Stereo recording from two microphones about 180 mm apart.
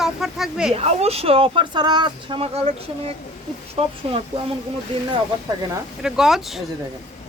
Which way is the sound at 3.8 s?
35° right (ahead or behind).